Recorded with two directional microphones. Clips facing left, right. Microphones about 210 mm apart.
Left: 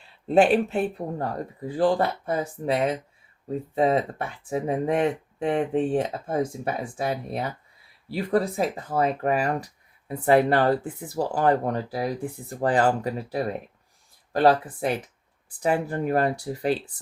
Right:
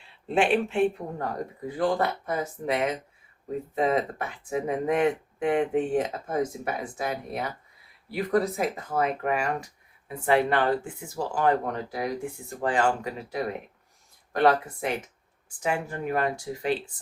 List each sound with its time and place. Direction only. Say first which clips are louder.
0.3 s speech: left 5 dB; 40° left (ahead or behind)